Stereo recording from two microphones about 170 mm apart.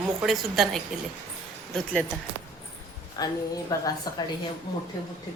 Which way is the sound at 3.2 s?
20° left (ahead or behind).